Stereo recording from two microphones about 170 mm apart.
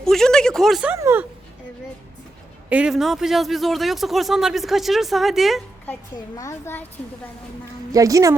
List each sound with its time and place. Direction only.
0.0 s a sound: 5° left (ahead or behind)
0.9 s speech: 15° right (ahead or behind)
2.6 s a man's voice: 5° right (ahead or behind)
6.3 s a child's voice: 20° left (ahead or behind)
7.9 s a woman's voice: 20° right (ahead or behind)